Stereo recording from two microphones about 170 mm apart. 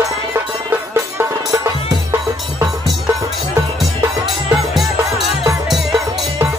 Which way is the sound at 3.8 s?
Centre (ahead or behind).